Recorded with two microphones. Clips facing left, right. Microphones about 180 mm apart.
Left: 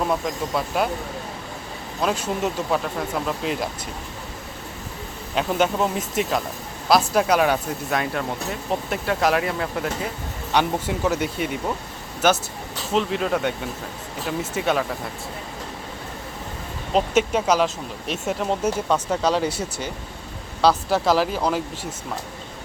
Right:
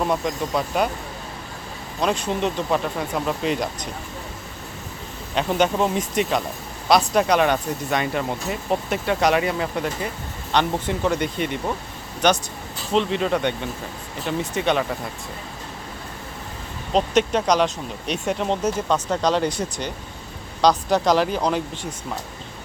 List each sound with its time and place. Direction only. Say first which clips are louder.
0.0 s speech: right 1 dB; centre (ahead or behind)
2.0 s speech: right 1 dB; 5° left (ahead or behind)
5.3 s speech: right 1 dB; centre (ahead or behind)
16.9 s speech: right 1 dB; 5° left (ahead or behind)